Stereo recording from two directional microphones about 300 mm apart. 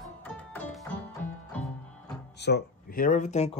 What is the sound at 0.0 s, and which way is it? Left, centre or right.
Music, centre.